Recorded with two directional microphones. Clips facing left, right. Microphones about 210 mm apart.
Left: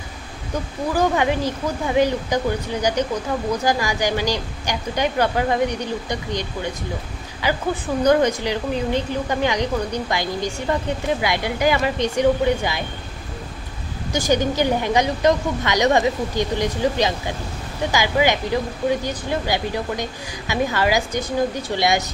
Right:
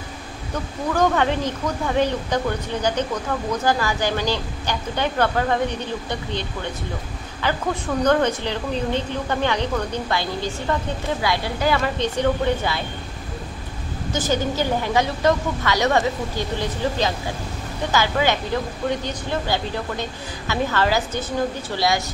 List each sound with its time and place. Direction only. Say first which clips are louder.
0.9 s a woman's voice: even; 10° left (ahead or behind)
7.4 s a woman's voice: left 1 dB; 10° left (ahead or behind)
14.1 s a woman's voice: left 3 dB; 15° left (ahead or behind)